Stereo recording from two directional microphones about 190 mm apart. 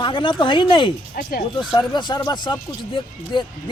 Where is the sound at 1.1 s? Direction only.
45° left (ahead or behind).